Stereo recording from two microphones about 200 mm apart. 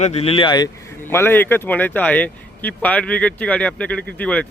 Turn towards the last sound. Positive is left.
turn(degrees=5)  # may be behind; listen again after turning